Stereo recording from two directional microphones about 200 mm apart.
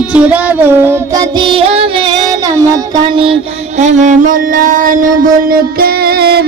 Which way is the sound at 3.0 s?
25° right (ahead or behind).